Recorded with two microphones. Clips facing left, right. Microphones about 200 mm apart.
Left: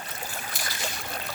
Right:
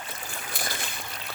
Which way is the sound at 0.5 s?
55° right (ahead or behind).